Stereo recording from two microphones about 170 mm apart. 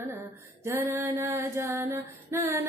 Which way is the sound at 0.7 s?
15° right (ahead or behind).